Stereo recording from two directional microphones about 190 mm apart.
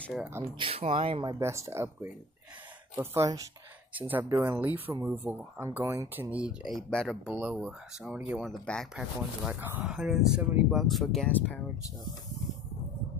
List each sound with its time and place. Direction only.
0.0 s speech: 5° right (ahead or behind)
0.6 s speech: 30° right (ahead or behind)
1.4 s speech: 15° right (ahead or behind)
3.0 s speech: 15° right (ahead or behind); by 9.0 s 5° left (ahead or behind)
9.5 s speech: 10° right (ahead or behind); by 11.6 s 10° left (ahead or behind)